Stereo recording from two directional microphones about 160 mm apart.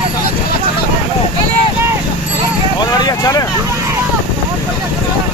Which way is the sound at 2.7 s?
25° left (ahead or behind).